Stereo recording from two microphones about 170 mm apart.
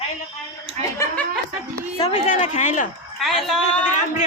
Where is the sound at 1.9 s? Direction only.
35° left (ahead or behind).